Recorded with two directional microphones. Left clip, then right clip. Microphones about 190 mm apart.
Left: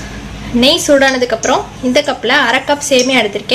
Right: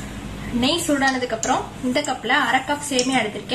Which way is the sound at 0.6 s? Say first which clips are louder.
Left 11 dB; 40° left (ahead or behind).